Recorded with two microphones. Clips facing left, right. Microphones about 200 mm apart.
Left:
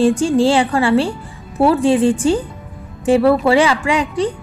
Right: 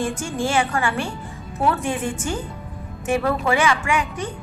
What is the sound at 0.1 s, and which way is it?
A woman's voice, 35° left (ahead or behind).